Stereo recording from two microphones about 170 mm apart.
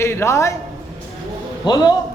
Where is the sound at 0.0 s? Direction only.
15° left (ahead or behind).